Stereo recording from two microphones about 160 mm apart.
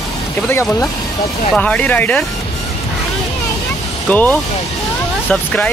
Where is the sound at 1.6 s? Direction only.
10° left (ahead or behind).